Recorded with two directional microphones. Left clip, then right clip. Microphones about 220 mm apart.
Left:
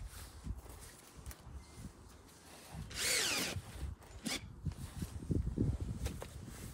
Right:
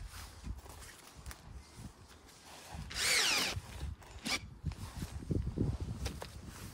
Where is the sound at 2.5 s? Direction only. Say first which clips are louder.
Right 4 dB; 20° right (ahead or behind).